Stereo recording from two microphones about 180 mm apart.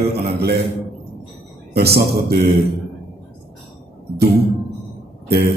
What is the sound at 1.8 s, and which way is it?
Speech, 60° right (ahead or behind).